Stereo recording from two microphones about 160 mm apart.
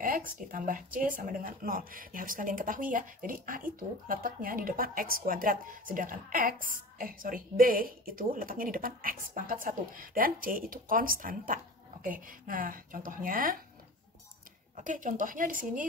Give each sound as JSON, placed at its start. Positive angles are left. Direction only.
{"t": 0.0, "sound": "speech", "side_deg": -60}
{"t": 14.8, "sound": "speech", "side_deg": -55}